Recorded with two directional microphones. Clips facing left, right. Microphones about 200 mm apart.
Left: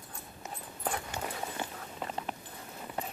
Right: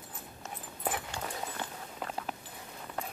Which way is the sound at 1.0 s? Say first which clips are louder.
Left 1 dB; 15° left (ahead or behind).